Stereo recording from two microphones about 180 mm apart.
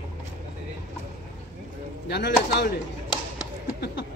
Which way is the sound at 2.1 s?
65° left (ahead or behind).